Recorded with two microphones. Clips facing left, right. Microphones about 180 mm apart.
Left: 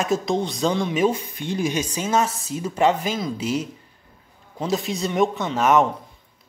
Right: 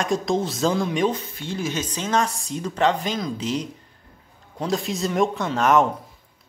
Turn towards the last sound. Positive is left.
turn(degrees=0)  # may be behind; listen again after turning